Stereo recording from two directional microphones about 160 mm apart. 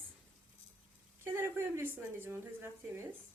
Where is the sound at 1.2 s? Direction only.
15° right (ahead or behind).